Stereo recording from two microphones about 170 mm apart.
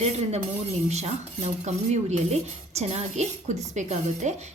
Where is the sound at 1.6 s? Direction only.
40° right (ahead or behind).